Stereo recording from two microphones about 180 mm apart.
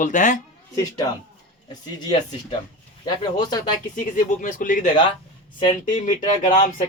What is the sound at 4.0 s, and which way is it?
Speech, 45° left (ahead or behind).